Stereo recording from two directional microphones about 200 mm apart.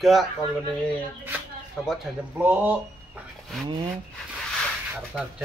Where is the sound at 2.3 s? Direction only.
10° right (ahead or behind).